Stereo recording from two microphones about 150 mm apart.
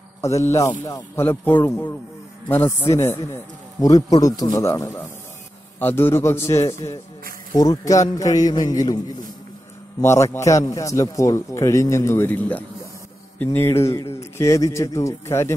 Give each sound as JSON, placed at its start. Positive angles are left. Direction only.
{"t": 0.2, "sound": "a man's voice", "side_deg": 20}
{"t": 10.0, "sound": "a man's voice", "side_deg": 20}